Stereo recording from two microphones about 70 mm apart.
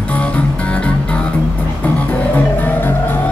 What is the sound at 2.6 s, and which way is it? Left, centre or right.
Music, left.